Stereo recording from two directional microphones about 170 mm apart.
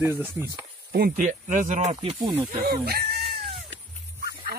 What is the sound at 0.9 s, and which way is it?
A man's voice, 55° right (ahead or behind).